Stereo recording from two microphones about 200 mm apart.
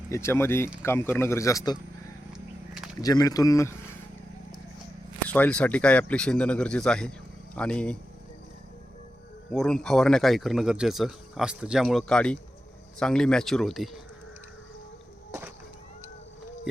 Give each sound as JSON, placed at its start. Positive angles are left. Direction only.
{"t": 0.1, "sound": "speech", "side_deg": 15}
{"t": 3.0, "sound": "speech", "side_deg": 20}
{"t": 5.3, "sound": "a man's voice", "side_deg": 5}
{"t": 9.5, "sound": "a man's voice", "side_deg": 0}